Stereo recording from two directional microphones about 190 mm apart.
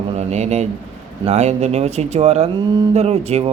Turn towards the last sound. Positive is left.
turn(degrees=-35)  # may be behind; listen again after turning